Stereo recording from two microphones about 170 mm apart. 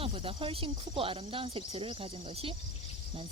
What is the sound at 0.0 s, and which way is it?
Speech, 35° right (ahead or behind).